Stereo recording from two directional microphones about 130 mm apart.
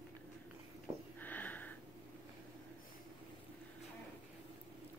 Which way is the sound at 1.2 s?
15° left (ahead or behind).